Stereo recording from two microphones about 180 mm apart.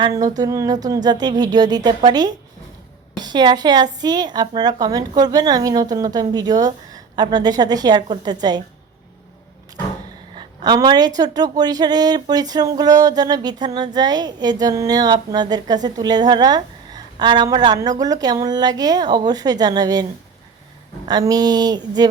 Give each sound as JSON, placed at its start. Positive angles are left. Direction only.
{"t": 0.0, "sound": "a woman's voice", "side_deg": -20}
{"t": 10.3, "sound": "a woman's voice", "side_deg": -25}
{"t": 21.1, "sound": "a woman's voice", "side_deg": -20}